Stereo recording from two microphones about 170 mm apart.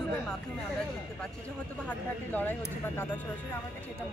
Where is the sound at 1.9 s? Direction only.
10° left (ahead or behind).